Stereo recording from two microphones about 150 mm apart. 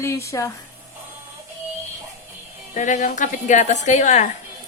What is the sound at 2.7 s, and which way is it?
A woman's voice, 55° left (ahead or behind).